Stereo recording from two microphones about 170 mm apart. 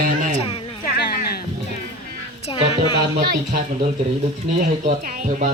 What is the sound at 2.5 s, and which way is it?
Speech, 30° left (ahead or behind).